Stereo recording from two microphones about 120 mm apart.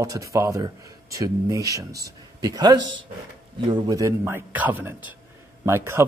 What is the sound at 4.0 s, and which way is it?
Speech, 20° right (ahead or behind).